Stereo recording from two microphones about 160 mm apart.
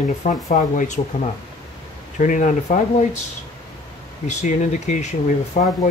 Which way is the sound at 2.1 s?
50° left (ahead or behind).